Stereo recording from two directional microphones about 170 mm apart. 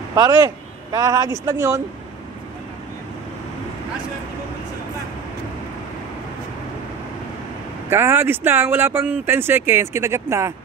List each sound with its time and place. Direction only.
0.1 s speech: 20° right (ahead or behind)
7.9 s speech: 15° right (ahead or behind)